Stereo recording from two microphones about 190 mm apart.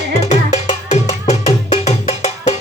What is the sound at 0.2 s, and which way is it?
Music, 35° left (ahead or behind).